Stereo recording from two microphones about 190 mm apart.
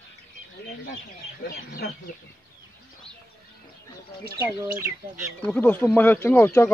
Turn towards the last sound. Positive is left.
turn(degrees=10)  # may be behind; listen again after turning